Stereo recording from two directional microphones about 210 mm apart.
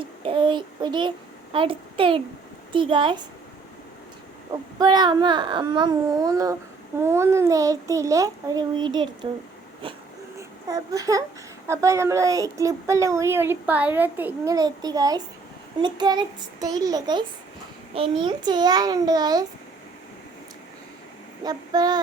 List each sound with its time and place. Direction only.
0.0 s a sound: 25° right (ahead or behind)
1.5 s a child's voice: 25° right (ahead or behind)
4.8 s a child's voice: 20° right (ahead or behind)
21.4 s a child's voice: 20° right (ahead or behind)